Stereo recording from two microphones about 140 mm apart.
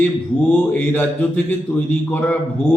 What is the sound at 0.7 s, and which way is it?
Mantra, 10° left (ahead or behind).